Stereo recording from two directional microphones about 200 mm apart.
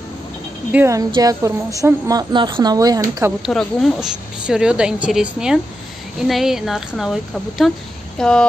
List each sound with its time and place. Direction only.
0.7 s a woman's voice: 10° right (ahead or behind)
3.4 s a woman's voice: centre (ahead or behind)